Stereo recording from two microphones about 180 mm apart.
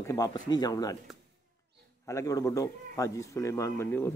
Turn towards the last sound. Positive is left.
turn(degrees=10)  # may be behind; listen again after turning